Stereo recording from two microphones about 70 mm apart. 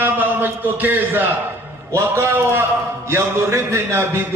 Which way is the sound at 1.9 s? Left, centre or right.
Right.